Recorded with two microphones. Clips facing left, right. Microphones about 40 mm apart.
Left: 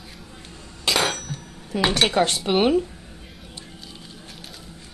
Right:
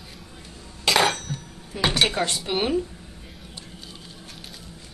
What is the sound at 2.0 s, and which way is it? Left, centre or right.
Dishes, left.